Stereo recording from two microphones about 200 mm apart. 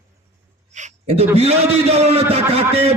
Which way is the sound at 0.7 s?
35° right (ahead or behind).